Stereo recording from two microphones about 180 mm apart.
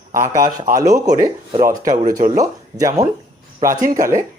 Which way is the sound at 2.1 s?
50° right (ahead or behind).